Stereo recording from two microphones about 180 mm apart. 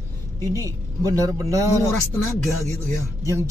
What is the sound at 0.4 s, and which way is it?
Speech, 20° right (ahead or behind).